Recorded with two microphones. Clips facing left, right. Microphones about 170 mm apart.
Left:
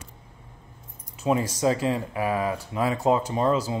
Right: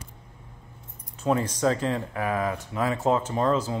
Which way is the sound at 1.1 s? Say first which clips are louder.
Left 1 dB; 10° left (ahead or behind).